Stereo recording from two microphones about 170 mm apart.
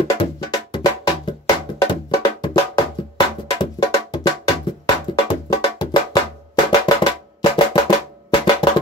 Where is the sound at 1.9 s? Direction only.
25° left (ahead or behind).